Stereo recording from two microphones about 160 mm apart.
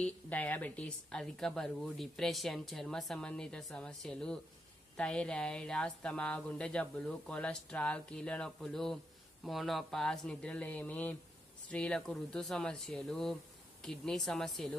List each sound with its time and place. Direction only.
0.0 s a woman's voice: 10° left (ahead or behind)